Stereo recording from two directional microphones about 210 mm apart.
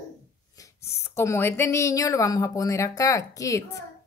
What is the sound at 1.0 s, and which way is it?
A woman's voice, 10° left (ahead or behind).